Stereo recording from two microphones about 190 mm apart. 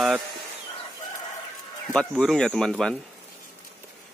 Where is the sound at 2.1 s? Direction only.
Centre (ahead or behind).